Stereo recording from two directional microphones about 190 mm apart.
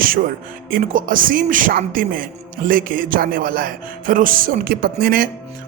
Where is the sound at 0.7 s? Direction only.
45° right (ahead or behind).